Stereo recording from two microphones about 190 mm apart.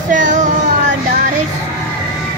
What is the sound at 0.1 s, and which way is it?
Child singing, 40° right (ahead or behind).